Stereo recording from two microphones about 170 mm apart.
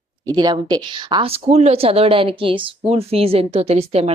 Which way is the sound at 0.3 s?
25° right (ahead or behind).